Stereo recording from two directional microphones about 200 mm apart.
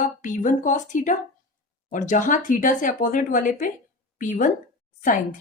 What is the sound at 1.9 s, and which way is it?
A woman's voice, 40° left (ahead or behind).